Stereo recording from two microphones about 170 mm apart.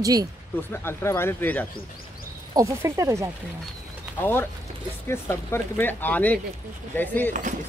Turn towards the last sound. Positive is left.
turn(degrees=10)  # may be behind; listen again after turning